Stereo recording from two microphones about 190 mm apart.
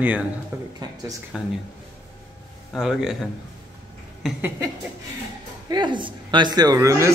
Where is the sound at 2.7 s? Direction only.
Centre (ahead or behind).